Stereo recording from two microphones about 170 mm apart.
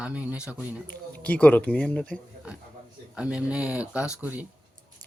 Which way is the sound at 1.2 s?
10° left (ahead or behind).